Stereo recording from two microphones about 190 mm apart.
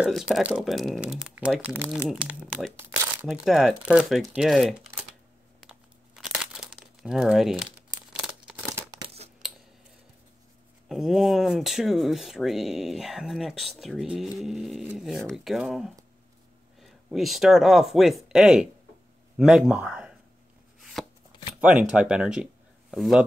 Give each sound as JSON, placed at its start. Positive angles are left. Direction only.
{"t": 0.3, "sound": "speech", "side_deg": -5}
{"t": 2.8, "sound": "crumpling", "side_deg": -15}
{"t": 3.3, "sound": "speech", "side_deg": 0}
{"t": 5.6, "sound": "crumpling", "side_deg": -5}
{"t": 8.1, "sound": "scissors", "side_deg": -5}
{"t": 8.9, "sound": "tearing", "side_deg": -30}
{"t": 10.9, "sound": "speech", "side_deg": 0}
{"t": 20.8, "sound": "chopping", "side_deg": 0}
{"t": 21.5, "sound": "speech", "side_deg": -5}